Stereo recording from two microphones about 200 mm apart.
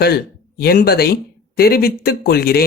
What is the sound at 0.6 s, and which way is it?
Speech, 50° left (ahead or behind).